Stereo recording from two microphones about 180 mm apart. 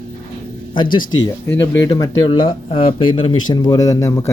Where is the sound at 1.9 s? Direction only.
30° left (ahead or behind).